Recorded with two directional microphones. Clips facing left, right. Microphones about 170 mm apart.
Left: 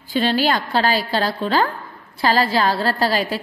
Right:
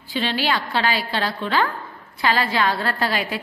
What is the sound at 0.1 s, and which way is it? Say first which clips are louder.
A woman's voice: left 5 dB; 40° left (ahead or behind).